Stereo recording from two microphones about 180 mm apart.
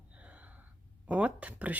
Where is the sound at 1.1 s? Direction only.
10° right (ahead or behind).